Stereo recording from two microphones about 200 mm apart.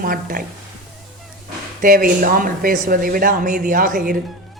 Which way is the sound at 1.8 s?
45° right (ahead or behind).